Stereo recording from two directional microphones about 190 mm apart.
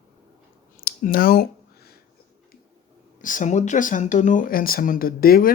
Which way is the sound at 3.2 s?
45° left (ahead or behind).